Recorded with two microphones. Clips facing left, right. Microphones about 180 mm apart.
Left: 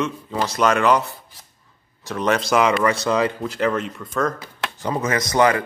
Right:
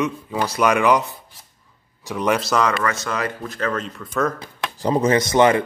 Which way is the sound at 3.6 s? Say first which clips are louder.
Left 3 dB; 10° left (ahead or behind).